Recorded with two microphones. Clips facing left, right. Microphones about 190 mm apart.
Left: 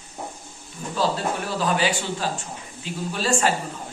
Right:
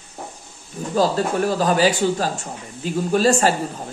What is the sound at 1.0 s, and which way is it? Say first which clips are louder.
Speech: right 6 dB; 45° right (ahead or behind).